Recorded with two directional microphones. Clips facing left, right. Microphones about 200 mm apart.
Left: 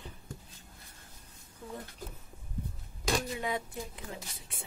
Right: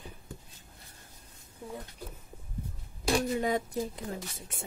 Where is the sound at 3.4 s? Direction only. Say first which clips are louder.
Right 6 dB; 40° right (ahead or behind).